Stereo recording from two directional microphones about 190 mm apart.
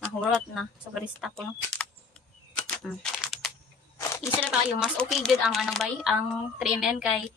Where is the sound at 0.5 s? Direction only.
Centre (ahead or behind).